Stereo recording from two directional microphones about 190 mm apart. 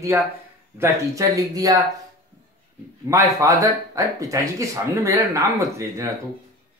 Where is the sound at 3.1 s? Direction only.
15° right (ahead or behind).